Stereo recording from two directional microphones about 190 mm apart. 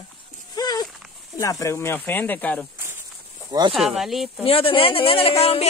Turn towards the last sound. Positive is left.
turn(degrees=30)  # may be behind; listen again after turning